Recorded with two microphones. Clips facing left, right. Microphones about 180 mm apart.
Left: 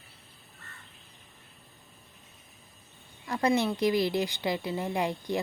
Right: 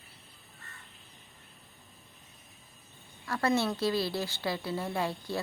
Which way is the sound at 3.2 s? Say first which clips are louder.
Left 2 dB; 20° left (ahead or behind).